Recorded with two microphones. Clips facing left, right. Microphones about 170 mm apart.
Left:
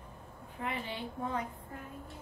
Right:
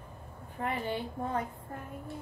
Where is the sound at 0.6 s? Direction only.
50° right (ahead or behind).